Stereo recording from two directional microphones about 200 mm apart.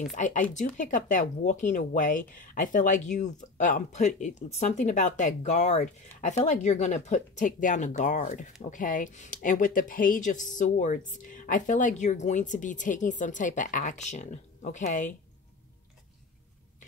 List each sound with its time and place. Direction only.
0.0 s speech: 40° left (ahead or behind)